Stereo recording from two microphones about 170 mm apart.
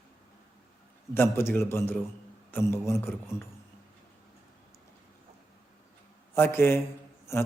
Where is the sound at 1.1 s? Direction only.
15° left (ahead or behind).